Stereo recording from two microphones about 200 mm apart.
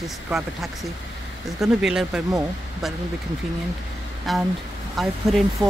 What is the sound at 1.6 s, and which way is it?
Speech, centre (ahead or behind).